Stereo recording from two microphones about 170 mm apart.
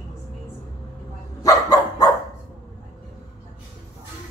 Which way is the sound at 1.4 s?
20° left (ahead or behind).